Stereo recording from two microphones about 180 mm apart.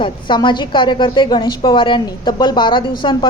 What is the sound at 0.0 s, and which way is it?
Speech, 25° left (ahead or behind).